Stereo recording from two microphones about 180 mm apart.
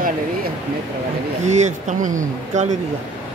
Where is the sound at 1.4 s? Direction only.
40° right (ahead or behind).